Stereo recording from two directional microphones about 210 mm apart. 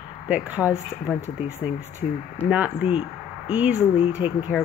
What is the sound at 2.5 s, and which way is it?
Speech, 5° right (ahead or behind).